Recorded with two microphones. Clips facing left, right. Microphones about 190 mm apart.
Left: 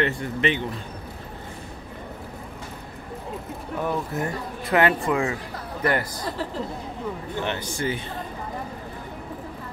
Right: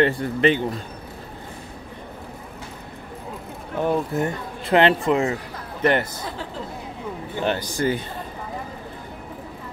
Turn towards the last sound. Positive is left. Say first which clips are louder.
# right 5 dB
turn(degrees=-40)  # may be behind; listen again after turning